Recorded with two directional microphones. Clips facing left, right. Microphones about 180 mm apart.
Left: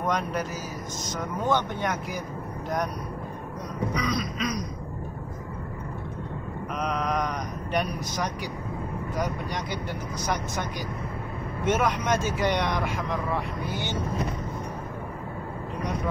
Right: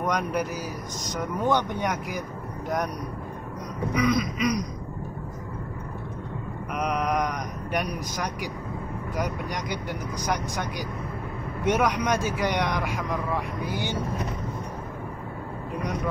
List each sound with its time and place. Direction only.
0.0 s speech: 15° right (ahead or behind)
3.9 s speech: 15° right (ahead or behind)
6.8 s speech: 10° right (ahead or behind)
9.5 s speech: 15° right (ahead or behind)
11.6 s speech: 15° right (ahead or behind)